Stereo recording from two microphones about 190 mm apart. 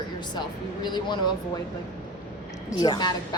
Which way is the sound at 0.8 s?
25° left (ahead or behind).